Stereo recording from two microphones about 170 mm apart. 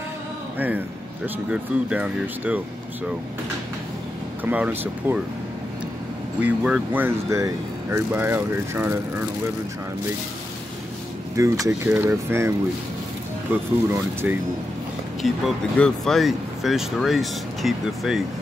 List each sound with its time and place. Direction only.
0.6 s speech: 10° right (ahead or behind)
4.5 s speech: 10° right (ahead or behind)
6.4 s speech: 5° right (ahead or behind)
11.3 s speech: 20° right (ahead or behind)
15.2 s speech: centre (ahead or behind)